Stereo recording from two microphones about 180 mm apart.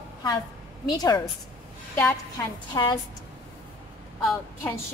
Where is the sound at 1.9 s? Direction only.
15° left (ahead or behind).